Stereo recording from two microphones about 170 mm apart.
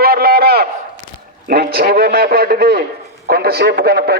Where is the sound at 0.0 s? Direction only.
65° right (ahead or behind).